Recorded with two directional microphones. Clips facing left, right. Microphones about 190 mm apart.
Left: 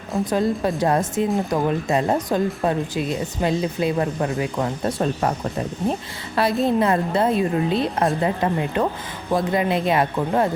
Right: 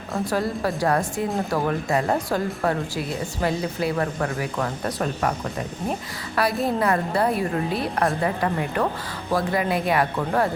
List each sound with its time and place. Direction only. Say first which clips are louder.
0.3 s speech: left 4 dB; 20° left (ahead or behind)
6.3 s speech: left 3 dB; 20° left (ahead or behind)